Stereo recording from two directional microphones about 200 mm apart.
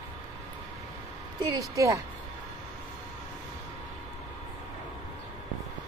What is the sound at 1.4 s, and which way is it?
Speech, 15° right (ahead or behind).